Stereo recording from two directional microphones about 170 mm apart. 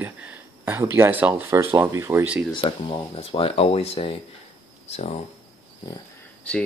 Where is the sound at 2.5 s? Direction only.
30° left (ahead or behind).